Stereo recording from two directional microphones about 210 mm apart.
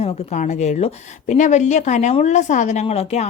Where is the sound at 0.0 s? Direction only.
30° left (ahead or behind).